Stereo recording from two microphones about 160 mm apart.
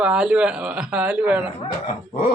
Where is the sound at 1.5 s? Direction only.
40° left (ahead or behind).